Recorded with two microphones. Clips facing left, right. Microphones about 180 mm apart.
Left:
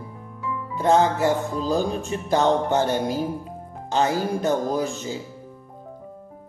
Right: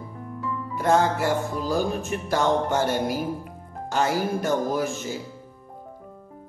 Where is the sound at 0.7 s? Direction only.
20° left (ahead or behind).